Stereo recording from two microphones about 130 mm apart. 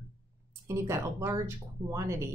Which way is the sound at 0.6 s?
20° right (ahead or behind).